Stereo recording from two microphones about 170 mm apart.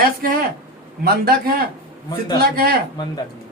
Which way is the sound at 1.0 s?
60° right (ahead or behind).